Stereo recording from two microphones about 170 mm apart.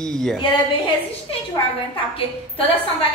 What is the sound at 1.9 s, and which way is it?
Speech, 30° left (ahead or behind).